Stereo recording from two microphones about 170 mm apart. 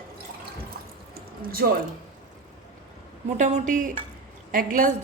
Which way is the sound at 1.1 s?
60° right (ahead or behind).